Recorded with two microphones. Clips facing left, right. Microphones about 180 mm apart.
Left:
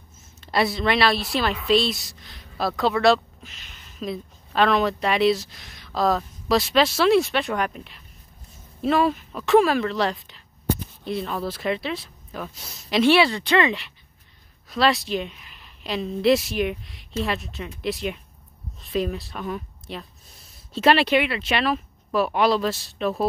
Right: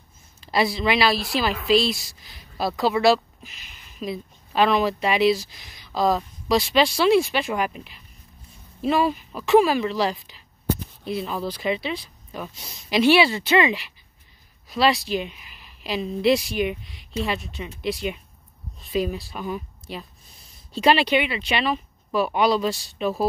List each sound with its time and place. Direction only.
0.5 s a woman's voice: centre (ahead or behind)